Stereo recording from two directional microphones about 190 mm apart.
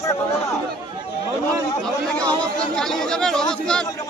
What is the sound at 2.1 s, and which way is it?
Speech, 5° left (ahead or behind).